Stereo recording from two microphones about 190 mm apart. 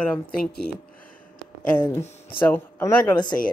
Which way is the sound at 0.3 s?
55° left (ahead or behind).